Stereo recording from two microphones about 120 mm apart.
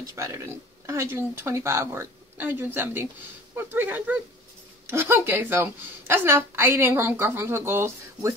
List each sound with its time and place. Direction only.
0.0 s a woman's voice: 25° right (ahead or behind)